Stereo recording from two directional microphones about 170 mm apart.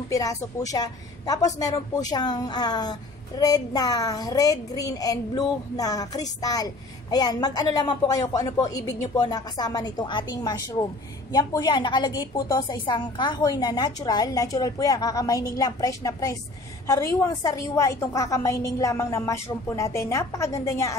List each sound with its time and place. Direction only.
0.1 s a woman's voice: 20° left (ahead or behind)